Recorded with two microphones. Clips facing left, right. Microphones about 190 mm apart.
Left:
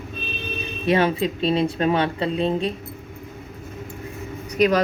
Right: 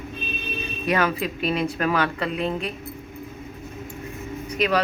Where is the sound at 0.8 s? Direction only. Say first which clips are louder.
Left 4 dB; 30° left (ahead or behind).